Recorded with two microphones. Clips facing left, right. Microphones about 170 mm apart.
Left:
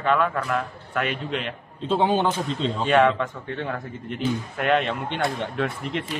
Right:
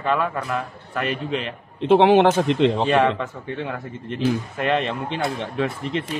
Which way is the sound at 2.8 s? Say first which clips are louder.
Even; 10° right (ahead or behind).